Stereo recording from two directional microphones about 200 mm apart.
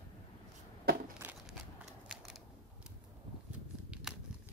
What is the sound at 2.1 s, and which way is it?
Scissors, centre (ahead or behind).